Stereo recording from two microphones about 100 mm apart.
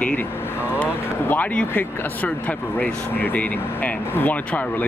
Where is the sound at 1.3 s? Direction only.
15° left (ahead or behind).